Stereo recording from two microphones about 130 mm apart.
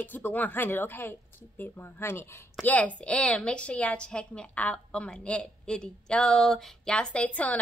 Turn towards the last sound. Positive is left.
turn(degrees=10)  # may be behind; listen again after turning